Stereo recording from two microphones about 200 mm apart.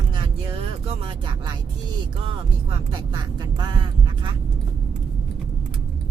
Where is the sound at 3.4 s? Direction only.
20° right (ahead or behind).